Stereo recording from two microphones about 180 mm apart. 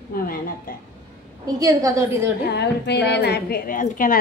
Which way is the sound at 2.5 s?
70° left (ahead or behind).